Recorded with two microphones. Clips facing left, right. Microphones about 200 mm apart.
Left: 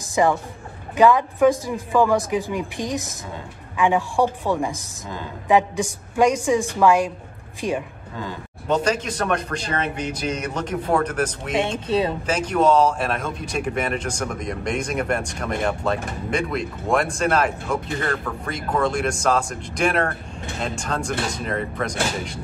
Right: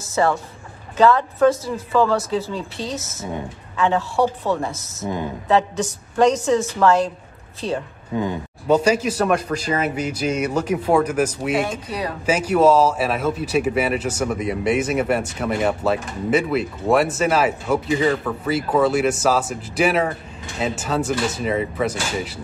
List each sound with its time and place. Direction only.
0.0 s a sound: 15° left (ahead or behind)
0.9 s a woman's voice: 10° left (ahead or behind)
8.6 s speech: 10° right (ahead or behind)
11.9 s speech: 25° left (ahead or behind)
12.3 s speech: 10° right (ahead or behind)